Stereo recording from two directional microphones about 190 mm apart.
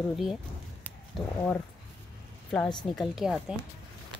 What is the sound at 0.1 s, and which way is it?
Speech, centre (ahead or behind).